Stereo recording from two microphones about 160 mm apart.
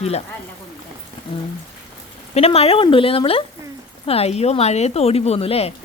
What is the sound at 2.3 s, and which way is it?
Speech, 40° left (ahead or behind).